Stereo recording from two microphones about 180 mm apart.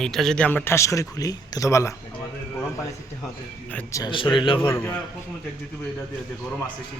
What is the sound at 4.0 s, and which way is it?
Speech, 25° left (ahead or behind).